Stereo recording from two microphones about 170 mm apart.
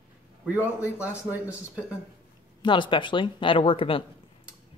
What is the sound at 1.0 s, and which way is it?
Speech, 10° right (ahead or behind).